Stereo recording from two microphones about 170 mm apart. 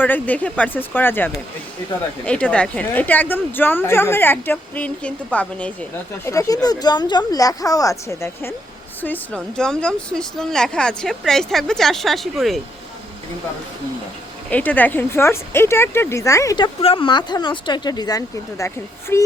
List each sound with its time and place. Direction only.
0.0 s a woman's voice: 10° left (ahead or behind)
6.2 s a woman's voice: 20° left (ahead or behind); by 12.5 s centre (ahead or behind)
14.5 s a woman's voice: 10° left (ahead or behind)
16.8 s speech: 30° left (ahead or behind)